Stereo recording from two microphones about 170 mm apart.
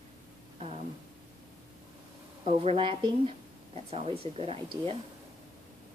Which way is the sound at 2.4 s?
35° right (ahead or behind).